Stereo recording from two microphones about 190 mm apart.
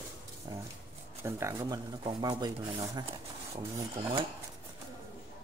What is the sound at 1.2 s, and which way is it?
Speech, 15° right (ahead or behind).